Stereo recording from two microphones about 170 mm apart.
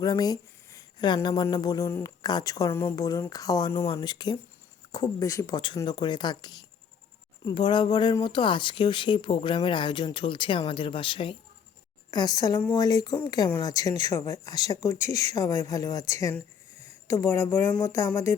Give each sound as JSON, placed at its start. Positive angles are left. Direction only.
{"t": 0.0, "sound": "speech", "side_deg": 20}